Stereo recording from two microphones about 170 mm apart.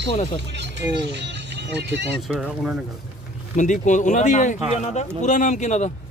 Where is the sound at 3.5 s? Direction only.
45° left (ahead or behind).